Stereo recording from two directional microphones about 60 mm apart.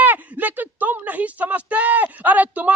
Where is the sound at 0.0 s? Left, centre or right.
Right.